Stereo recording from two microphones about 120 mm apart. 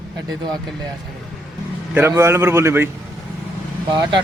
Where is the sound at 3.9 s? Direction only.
40° right (ahead or behind).